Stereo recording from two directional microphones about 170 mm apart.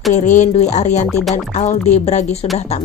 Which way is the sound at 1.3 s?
45° left (ahead or behind).